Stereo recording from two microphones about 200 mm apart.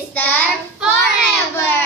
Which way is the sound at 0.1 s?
10° left (ahead or behind).